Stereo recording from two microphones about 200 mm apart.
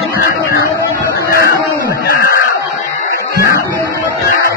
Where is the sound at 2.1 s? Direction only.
50° left (ahead or behind).